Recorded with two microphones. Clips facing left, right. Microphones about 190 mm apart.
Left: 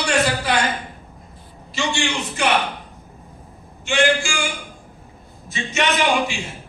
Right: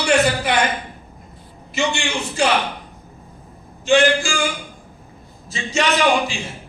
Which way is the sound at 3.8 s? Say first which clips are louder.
Right 4 dB; 35° right (ahead or behind).